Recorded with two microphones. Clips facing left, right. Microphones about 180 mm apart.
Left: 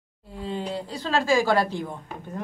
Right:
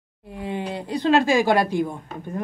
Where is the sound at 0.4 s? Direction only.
15° right (ahead or behind).